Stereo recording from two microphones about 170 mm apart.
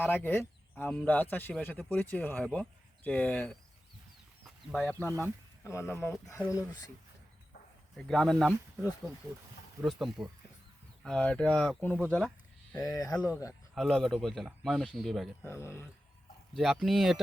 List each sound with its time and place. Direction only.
0.0 s a man's voice: 10° left (ahead or behind)
7.9 s speech: 5° left (ahead or behind)
9.8 s a man's voice: centre (ahead or behind)
12.7 s speech: 20° left (ahead or behind)
13.7 s speech: centre (ahead or behind)
15.4 s a man's voice: 15° left (ahead or behind)
16.6 s speech: centre (ahead or behind)